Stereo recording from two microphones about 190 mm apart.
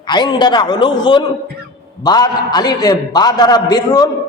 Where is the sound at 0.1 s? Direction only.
25° left (ahead or behind).